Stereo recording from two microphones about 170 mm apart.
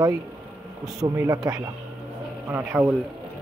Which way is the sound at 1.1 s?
20° right (ahead or behind).